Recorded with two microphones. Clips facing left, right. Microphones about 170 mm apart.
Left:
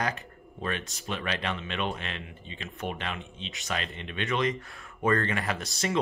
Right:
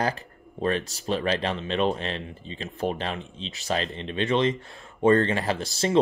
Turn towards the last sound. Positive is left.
turn(degrees=-30)  # may be behind; listen again after turning